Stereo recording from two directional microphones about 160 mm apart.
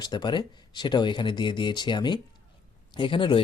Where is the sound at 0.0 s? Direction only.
25° left (ahead or behind).